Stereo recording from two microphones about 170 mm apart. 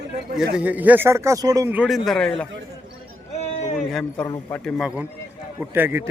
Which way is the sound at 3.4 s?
40° left (ahead or behind).